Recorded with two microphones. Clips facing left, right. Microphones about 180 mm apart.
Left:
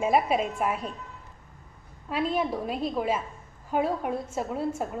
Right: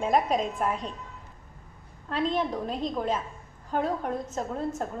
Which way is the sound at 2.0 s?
10° left (ahead or behind).